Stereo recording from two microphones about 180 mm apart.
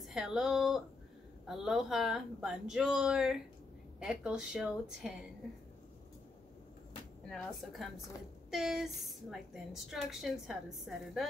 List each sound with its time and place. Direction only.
0.0 s a woman's voice: 5° right (ahead or behind)
7.2 s a woman's voice: centre (ahead or behind)